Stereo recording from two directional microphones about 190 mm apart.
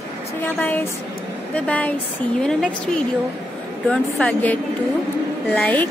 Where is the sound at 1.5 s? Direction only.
10° left (ahead or behind).